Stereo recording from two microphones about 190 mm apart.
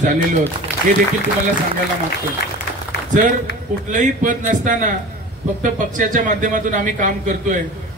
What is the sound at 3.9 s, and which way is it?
A man's voice, 40° right (ahead or behind).